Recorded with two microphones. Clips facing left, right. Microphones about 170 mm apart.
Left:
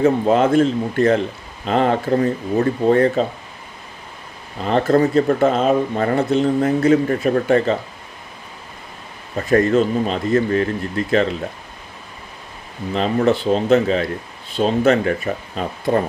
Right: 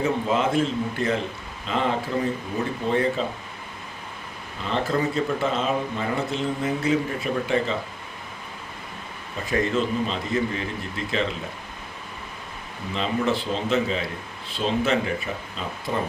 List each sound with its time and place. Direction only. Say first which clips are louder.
0.0 s speech: left 8 dB; 45° left (ahead or behind)
4.6 s speech: left 9 dB; 45° left (ahead or behind)
9.5 s speech: left 8 dB; 45° left (ahead or behind)
12.9 s speech: left 7 dB; 40° left (ahead or behind)